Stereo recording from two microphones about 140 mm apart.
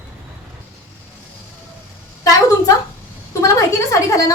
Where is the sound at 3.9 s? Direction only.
25° left (ahead or behind).